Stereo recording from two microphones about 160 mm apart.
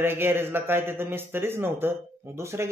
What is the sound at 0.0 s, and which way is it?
Speech, 15° right (ahead or behind).